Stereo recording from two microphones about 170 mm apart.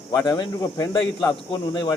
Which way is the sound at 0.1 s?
25° left (ahead or behind).